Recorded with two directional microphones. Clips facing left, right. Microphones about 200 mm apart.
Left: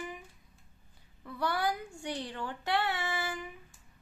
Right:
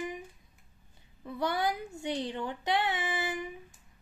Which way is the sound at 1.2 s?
20° right (ahead or behind).